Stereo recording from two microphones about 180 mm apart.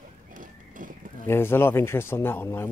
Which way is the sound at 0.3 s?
50° right (ahead or behind).